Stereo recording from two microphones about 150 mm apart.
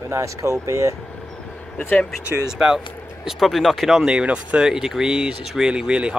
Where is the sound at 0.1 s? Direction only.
20° right (ahead or behind).